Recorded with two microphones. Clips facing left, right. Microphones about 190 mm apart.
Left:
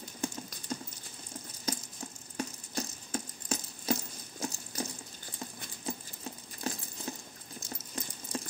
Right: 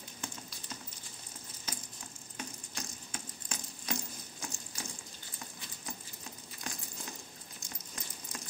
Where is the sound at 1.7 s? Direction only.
35° left (ahead or behind).